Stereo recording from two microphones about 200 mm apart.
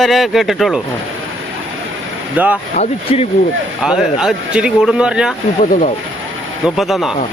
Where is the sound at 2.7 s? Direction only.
30° left (ahead or behind).